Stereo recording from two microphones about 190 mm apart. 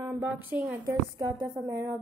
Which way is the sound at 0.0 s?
10° right (ahead or behind).